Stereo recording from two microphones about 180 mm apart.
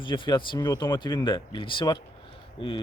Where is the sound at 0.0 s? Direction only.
25° left (ahead or behind).